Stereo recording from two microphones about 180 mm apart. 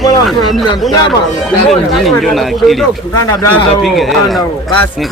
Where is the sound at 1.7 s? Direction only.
Centre (ahead or behind).